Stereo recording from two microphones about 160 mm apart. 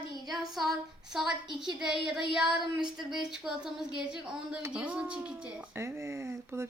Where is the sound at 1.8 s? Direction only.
5° right (ahead or behind).